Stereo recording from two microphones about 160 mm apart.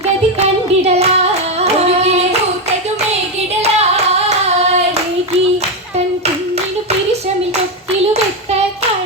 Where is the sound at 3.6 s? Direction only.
40° right (ahead or behind).